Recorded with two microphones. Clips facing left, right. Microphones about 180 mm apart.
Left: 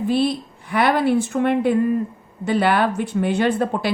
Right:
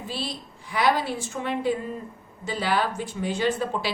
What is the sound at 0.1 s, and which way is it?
A woman's voice, 55° left (ahead or behind).